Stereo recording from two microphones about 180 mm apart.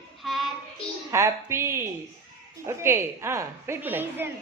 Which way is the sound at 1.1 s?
15° right (ahead or behind).